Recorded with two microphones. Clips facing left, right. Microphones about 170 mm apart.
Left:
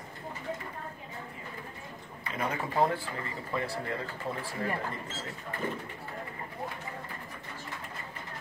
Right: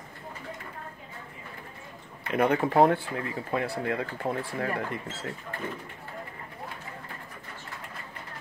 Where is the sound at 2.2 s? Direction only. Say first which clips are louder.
Right 9 dB; 65° right (ahead or behind).